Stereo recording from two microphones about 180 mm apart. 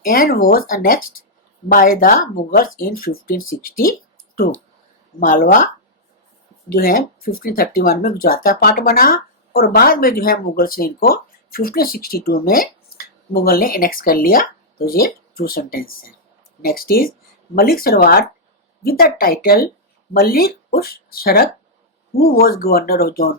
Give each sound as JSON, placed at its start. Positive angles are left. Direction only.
{"t": 0.0, "sound": "speech", "side_deg": 55}
{"t": 5.2, "sound": "speech", "side_deg": 45}
{"t": 6.7, "sound": "speech", "side_deg": 55}